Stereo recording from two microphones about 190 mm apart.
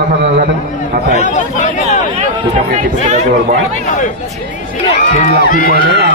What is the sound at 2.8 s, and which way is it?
Speech, 35° right (ahead or behind).